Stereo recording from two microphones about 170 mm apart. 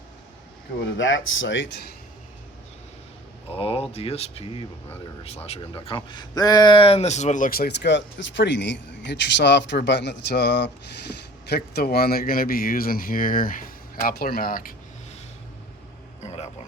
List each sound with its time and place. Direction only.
0.8 s speech: 90° left
3.5 s speech: 35° left (ahead or behind); by 10.7 s 85° left
11.4 s a man's voice: 70° left (ahead or behind)
16.2 s a sound: 40° left (ahead or behind)